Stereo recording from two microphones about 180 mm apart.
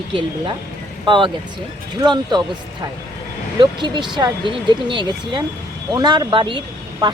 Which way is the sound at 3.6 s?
25° right (ahead or behind).